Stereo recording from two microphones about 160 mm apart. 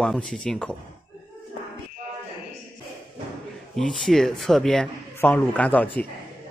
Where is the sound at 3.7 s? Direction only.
Centre (ahead or behind).